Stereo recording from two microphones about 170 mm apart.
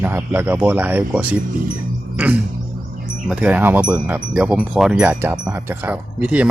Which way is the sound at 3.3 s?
5° right (ahead or behind).